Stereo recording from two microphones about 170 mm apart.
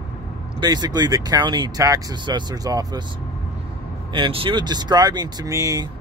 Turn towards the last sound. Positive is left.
turn(degrees=-20)  # may be behind; listen again after turning